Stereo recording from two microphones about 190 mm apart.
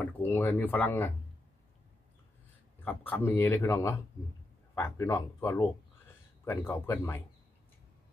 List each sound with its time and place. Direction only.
0.0 s speech: 10° left (ahead or behind)
2.8 s speech: 10° left (ahead or behind)